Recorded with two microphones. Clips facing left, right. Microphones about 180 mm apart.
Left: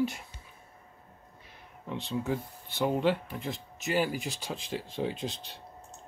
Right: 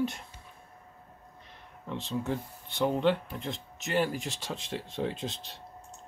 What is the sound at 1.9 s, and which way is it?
Speech, centre (ahead or behind).